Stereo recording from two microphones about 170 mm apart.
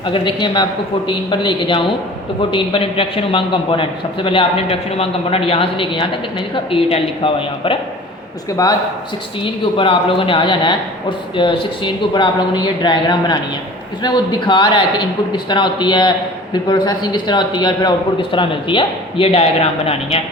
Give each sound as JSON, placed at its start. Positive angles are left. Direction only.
{"t": 0.1, "sound": "a man's voice", "side_deg": 30}
{"t": 9.4, "sound": "a man's voice", "side_deg": 30}